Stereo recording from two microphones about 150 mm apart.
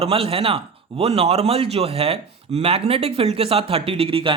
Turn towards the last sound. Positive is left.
turn(degrees=-35)  # may be behind; listen again after turning